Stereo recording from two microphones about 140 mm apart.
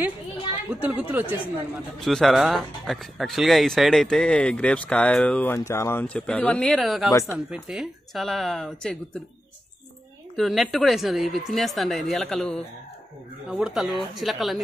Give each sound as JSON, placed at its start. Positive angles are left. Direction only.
{"t": 0.7, "sound": "speech", "side_deg": -10}
{"t": 2.0, "sound": "speech", "side_deg": 0}
{"t": 7.1, "sound": "speech", "side_deg": 20}
{"t": 7.3, "sound": "speech", "side_deg": -5}
{"t": 10.3, "sound": "speech", "side_deg": 0}